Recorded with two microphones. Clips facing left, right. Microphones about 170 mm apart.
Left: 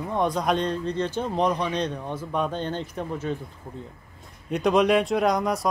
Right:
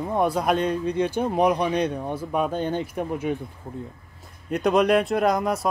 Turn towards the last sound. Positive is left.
turn(degrees=0)  # may be behind; listen again after turning